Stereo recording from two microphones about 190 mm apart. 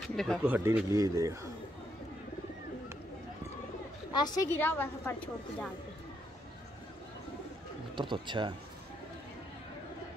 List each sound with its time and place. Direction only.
0.1 s speech: centre (ahead or behind)
0.5 s speech: 10° right (ahead or behind)
4.1 s a woman's voice: 20° left (ahead or behind)
7.9 s speech: 25° right (ahead or behind)